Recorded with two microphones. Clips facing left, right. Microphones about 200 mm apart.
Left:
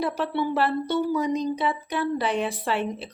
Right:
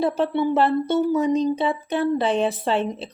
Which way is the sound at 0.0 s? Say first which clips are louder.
Right 5 dB; 25° right (ahead or behind).